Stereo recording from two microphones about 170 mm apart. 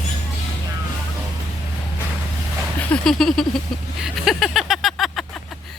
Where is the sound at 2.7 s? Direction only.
5° left (ahead or behind).